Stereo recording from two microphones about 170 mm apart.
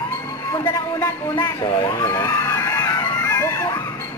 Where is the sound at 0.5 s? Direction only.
15° left (ahead or behind).